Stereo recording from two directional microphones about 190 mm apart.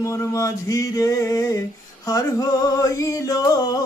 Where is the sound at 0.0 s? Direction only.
15° left (ahead or behind).